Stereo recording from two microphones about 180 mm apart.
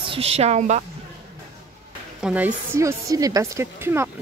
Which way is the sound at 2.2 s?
5° right (ahead or behind).